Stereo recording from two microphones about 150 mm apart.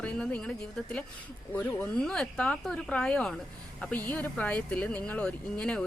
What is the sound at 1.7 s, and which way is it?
Speech, 15° left (ahead or behind).